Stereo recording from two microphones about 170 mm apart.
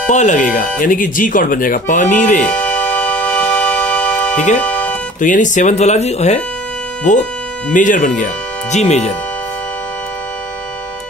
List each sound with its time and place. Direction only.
0.1 s speech: 45° left (ahead or behind)
2.4 s music: 10° left (ahead or behind)
5.2 s speech: 50° left (ahead or behind)